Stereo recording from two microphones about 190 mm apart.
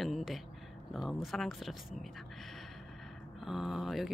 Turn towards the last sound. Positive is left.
turn(degrees=0)  # may be behind; listen again after turning